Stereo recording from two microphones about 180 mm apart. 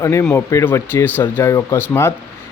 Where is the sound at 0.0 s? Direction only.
15° left (ahead or behind).